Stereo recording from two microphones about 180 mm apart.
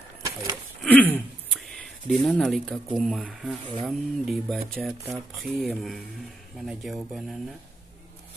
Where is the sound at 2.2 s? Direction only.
Centre (ahead or behind).